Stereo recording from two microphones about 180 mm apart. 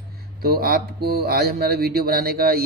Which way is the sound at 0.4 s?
55° right (ahead or behind).